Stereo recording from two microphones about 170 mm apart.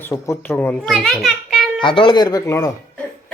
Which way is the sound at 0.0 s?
15° left (ahead or behind).